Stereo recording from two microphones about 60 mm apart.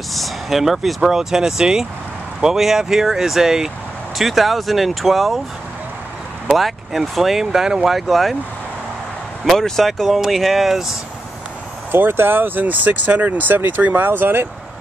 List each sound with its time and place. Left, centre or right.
0.1 s speech: centre
6.5 s speech: centre
9.4 s speech: centre
11.9 s speech: right